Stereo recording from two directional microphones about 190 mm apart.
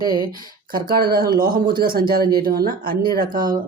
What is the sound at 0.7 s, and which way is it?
Speech, 50° right (ahead or behind).